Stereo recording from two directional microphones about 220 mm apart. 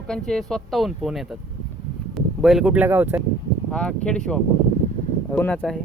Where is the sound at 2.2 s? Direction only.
Centre (ahead or behind).